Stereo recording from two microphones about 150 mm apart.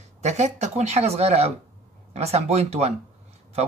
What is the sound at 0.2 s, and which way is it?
Speech, 50° right (ahead or behind).